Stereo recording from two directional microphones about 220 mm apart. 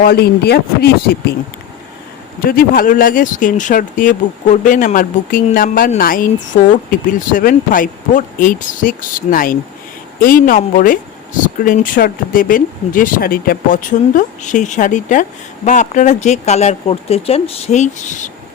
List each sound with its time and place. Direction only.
0.0 s speech: 45° left (ahead or behind)
2.4 s speech: 40° left (ahead or behind)